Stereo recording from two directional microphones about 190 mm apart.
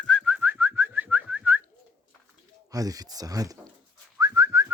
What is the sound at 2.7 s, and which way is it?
Speech, 20° right (ahead or behind).